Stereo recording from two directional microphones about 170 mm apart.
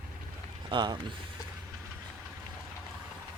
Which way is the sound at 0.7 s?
25° right (ahead or behind).